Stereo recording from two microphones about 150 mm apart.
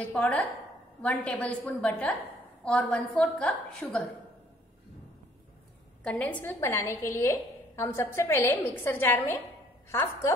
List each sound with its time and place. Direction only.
0.0 s a woman's voice: 10° left (ahead or behind)
6.0 s a woman's voice: 10° left (ahead or behind)